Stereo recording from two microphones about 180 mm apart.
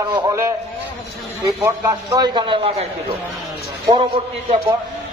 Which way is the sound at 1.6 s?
15° right (ahead or behind).